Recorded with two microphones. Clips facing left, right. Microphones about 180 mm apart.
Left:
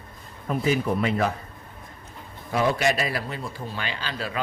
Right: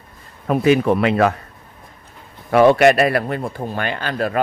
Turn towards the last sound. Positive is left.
turn(degrees=-55)  # may be behind; listen again after turning